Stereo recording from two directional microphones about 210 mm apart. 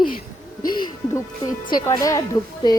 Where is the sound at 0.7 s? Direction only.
20° left (ahead or behind).